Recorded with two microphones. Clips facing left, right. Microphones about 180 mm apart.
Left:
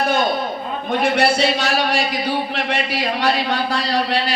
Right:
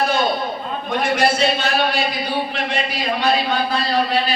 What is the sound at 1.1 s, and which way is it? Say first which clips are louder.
Speech: right 2 dB; 70° left (ahead or behind).